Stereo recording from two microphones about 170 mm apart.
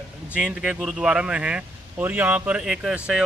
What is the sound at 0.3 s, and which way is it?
Speech, 5° right (ahead or behind).